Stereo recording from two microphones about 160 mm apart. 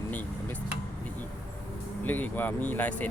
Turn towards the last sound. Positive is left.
turn(degrees=10)  # may be behind; listen again after turning